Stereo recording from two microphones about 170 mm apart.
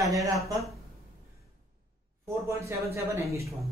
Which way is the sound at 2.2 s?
15° right (ahead or behind).